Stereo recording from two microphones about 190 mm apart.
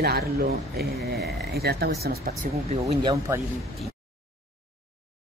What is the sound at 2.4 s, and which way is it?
Speech, 45° right (ahead or behind).